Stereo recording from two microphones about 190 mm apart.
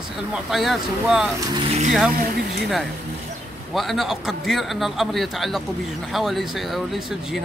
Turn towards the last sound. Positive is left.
turn(degrees=0)  # may be behind; listen again after turning